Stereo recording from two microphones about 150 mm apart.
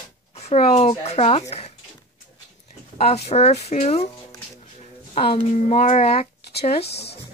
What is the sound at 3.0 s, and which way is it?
Speech, 45° left (ahead or behind).